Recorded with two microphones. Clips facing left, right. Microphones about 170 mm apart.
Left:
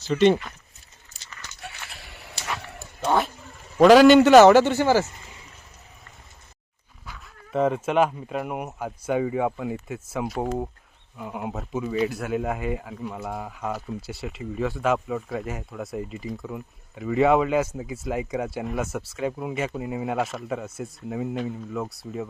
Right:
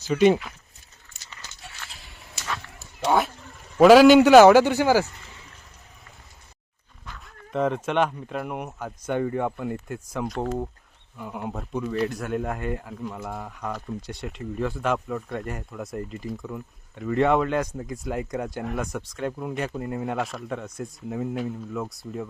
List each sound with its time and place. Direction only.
0.1 s speech: 5° right (ahead or behind)
1.1 s dog: 40° left (ahead or behind)
1.6 s biting: 65° left (ahead or behind)
3.0 s cat: 5° right (ahead or behind)
3.8 s speech: 5° right (ahead or behind)
7.0 s speech: 5° left (ahead or behind)